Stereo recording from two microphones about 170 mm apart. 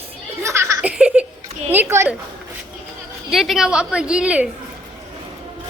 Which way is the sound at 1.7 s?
15° right (ahead or behind).